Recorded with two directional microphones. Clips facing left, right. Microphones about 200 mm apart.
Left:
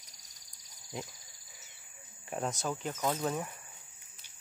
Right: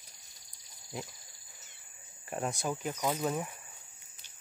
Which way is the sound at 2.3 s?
5° right (ahead or behind).